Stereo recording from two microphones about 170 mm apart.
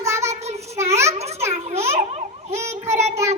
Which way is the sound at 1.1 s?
40° right (ahead or behind).